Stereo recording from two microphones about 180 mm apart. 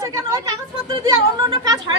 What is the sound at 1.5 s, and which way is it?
Speech, 20° right (ahead or behind).